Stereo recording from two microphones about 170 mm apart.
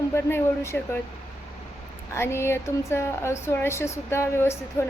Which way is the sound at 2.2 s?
15° left (ahead or behind).